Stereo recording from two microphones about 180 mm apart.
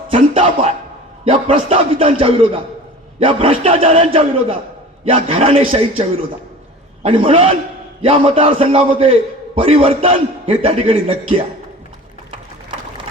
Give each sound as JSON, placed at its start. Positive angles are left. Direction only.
{"t": 0.3, "sound": "a man's voice", "side_deg": -30}